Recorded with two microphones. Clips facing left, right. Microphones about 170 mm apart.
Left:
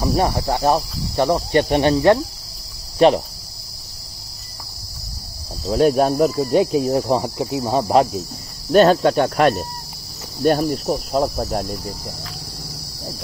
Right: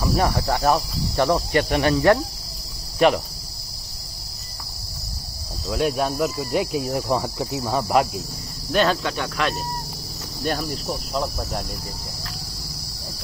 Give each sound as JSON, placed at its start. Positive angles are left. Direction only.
{"t": 0.0, "sound": "speech", "side_deg": 30}
{"t": 0.3, "sound": "speech", "side_deg": 20}
{"t": 1.1, "sound": "cricket", "side_deg": 20}
{"t": 1.5, "sound": "speech", "side_deg": 30}
{"t": 5.7, "sound": "speech", "side_deg": 40}
{"t": 8.7, "sound": "cricket", "side_deg": 45}